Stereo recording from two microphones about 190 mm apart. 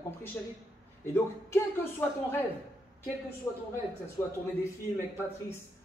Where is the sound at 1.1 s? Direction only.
10° left (ahead or behind).